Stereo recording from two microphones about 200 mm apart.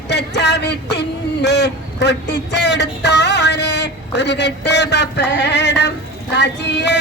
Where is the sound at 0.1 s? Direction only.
60° left (ahead or behind).